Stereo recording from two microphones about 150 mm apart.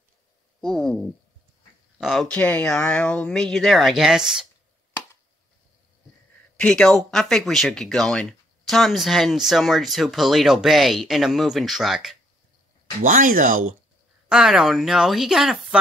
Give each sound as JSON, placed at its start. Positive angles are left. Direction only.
{"t": 0.6, "sound": "speech", "side_deg": 5}
{"t": 6.5, "sound": "speech", "side_deg": 5}
{"t": 13.0, "sound": "speech", "side_deg": -65}
{"t": 14.3, "sound": "speech", "side_deg": -5}